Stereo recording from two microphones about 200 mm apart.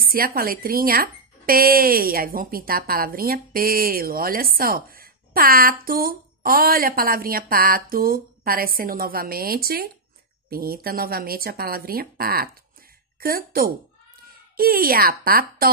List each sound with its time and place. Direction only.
0.0 s speech: 45° right (ahead or behind)